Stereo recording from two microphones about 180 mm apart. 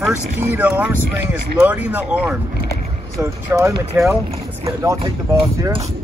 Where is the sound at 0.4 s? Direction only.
10° right (ahead or behind).